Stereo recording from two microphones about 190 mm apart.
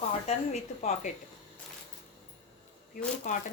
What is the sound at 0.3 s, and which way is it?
Speech, 35° left (ahead or behind).